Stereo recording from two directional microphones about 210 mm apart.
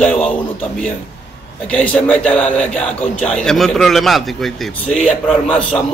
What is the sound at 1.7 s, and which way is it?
A man's voice, 5° left (ahead or behind).